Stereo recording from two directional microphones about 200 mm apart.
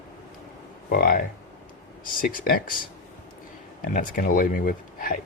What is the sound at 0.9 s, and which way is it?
Speech, 45° left (ahead or behind).